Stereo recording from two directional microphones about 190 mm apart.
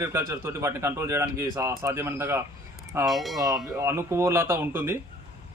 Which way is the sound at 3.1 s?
Centre (ahead or behind).